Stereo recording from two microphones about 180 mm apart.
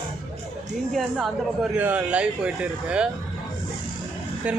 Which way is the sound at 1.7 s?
10° right (ahead or behind).